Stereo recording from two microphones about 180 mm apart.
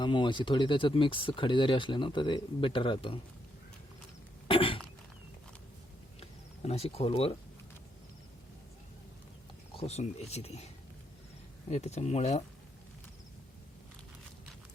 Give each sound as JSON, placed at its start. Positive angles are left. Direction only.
{"t": 0.0, "sound": "speech", "side_deg": 25}
{"t": 4.4, "sound": "cough", "side_deg": 30}
{"t": 6.7, "sound": "speech", "side_deg": 35}
{"t": 9.7, "sound": "speech", "side_deg": 35}
{"t": 11.7, "sound": "speech", "side_deg": 40}